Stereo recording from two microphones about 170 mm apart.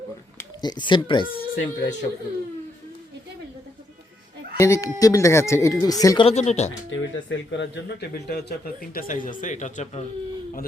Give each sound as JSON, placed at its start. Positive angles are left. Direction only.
{"t": 0.3, "sound": "speech", "side_deg": 25}
{"t": 1.4, "sound": "speech", "side_deg": 90}
{"t": 4.5, "sound": "speech", "side_deg": 20}
{"t": 6.2, "sound": "speech", "side_deg": 40}
{"t": 6.9, "sound": "speech", "side_deg": 90}
{"t": 8.3, "sound": "a man's voice", "side_deg": 65}